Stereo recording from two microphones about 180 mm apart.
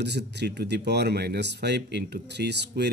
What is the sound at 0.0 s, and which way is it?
Speech, 70° right (ahead or behind).